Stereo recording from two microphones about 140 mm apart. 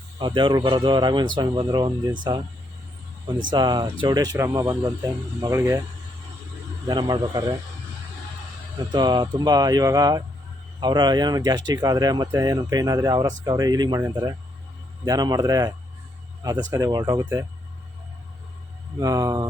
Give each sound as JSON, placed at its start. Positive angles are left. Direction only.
{"t": 0.2, "sound": "speech", "side_deg": -35}
{"t": 3.5, "sound": "speech", "side_deg": -30}
{"t": 6.8, "sound": "speech", "side_deg": -30}
{"t": 8.9, "sound": "speech", "side_deg": -30}
{"t": 15.0, "sound": "speech", "side_deg": -25}
{"t": 18.9, "sound": "speech", "side_deg": -25}